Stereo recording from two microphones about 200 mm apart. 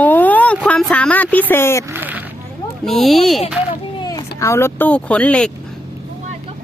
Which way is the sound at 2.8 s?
Centre (ahead or behind).